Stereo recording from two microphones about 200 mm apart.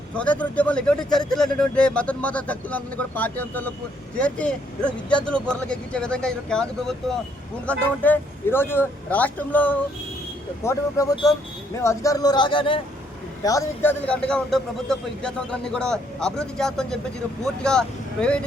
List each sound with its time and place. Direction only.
0.1 s speech: 5° left (ahead or behind)